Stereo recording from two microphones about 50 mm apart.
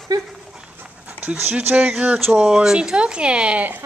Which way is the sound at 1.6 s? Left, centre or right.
Right.